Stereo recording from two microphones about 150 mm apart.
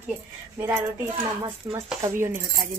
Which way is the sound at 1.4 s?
20° right (ahead or behind).